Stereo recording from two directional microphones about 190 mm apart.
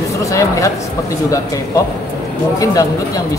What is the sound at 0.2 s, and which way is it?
Speech, 15° left (ahead or behind).